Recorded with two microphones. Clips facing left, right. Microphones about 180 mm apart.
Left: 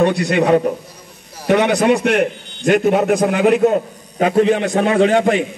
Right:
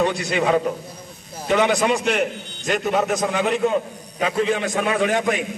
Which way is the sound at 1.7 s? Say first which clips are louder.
Left 5 dB; 60° left (ahead or behind).